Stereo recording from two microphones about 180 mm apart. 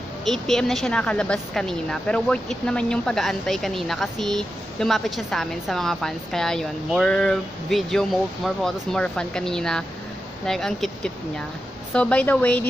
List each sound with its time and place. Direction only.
0.2 s a woman's voice: centre (ahead or behind)